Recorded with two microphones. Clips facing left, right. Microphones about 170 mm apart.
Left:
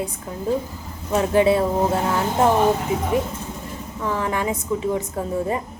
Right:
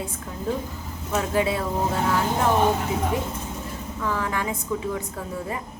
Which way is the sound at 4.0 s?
20° left (ahead or behind).